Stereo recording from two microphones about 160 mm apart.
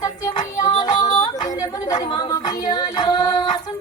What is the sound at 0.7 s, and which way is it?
Music, 25° left (ahead or behind).